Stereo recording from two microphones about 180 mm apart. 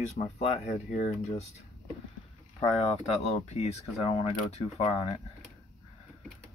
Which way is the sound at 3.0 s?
35° left (ahead or behind).